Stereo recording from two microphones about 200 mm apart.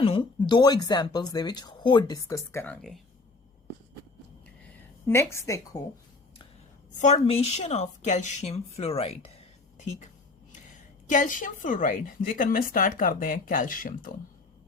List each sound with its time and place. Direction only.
0.0 s speech: 25° left (ahead or behind)
5.0 s a woman's voice: 15° left (ahead or behind)
7.0 s a woman's voice: 30° left (ahead or behind)
11.1 s a woman's voice: 40° left (ahead or behind)